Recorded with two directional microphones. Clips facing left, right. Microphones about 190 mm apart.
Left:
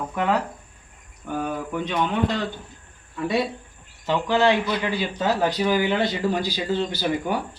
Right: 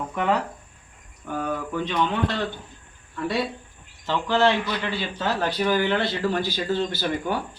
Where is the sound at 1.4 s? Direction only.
15° left (ahead or behind).